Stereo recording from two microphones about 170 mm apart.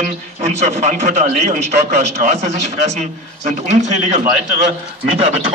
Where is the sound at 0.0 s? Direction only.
40° right (ahead or behind).